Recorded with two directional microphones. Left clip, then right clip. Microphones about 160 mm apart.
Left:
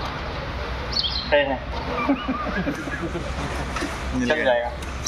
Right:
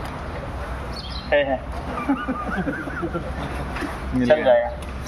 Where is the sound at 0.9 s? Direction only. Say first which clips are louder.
Left 1 dB; 45° right (ahead or behind).